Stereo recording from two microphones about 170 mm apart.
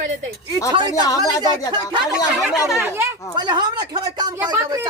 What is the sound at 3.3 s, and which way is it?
Speech, 25° right (ahead or behind).